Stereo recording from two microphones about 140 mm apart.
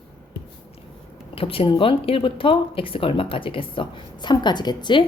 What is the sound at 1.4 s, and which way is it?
Speech, 40° left (ahead or behind).